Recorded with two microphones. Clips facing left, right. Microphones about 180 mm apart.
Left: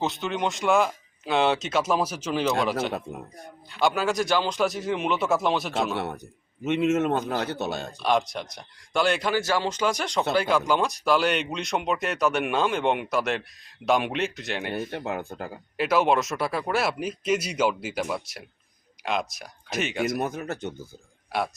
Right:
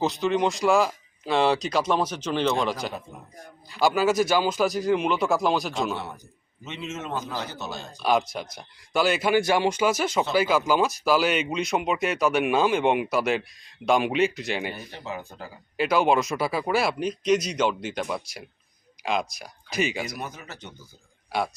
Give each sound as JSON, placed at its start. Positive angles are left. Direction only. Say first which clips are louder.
{"t": 0.0, "sound": "speech", "louder": "right 4 dB", "side_deg": 0}
{"t": 6.7, "sound": "speech", "louder": "left 11 dB", "side_deg": 60}
{"t": 8.0, "sound": "speech", "louder": "right 1 dB", "side_deg": 0}
{"t": 9.3, "sound": "speech", "louder": "right 4 dB", "side_deg": -15}
{"t": 14.8, "sound": "speech", "louder": "left 5 dB", "side_deg": 60}
{"t": 15.8, "sound": "speech", "louder": "right 1 dB", "side_deg": 0}
{"t": 20.1, "sound": "speech", "louder": "left 8 dB", "side_deg": 50}
{"t": 21.3, "sound": "a man's voice", "louder": "right 1 dB", "side_deg": 0}